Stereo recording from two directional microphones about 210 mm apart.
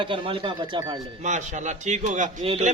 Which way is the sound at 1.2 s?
35° right (ahead or behind).